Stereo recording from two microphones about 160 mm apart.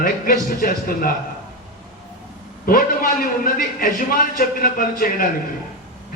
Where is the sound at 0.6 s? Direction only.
65° left (ahead or behind).